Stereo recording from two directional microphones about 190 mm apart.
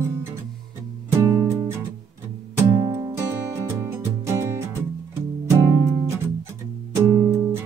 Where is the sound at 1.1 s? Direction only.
15° right (ahead or behind).